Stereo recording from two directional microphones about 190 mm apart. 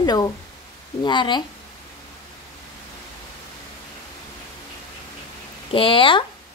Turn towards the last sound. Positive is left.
turn(degrees=25)  # may be behind; listen again after turning